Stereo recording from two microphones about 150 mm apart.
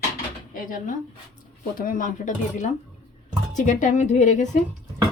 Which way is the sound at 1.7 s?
65° left (ahead or behind).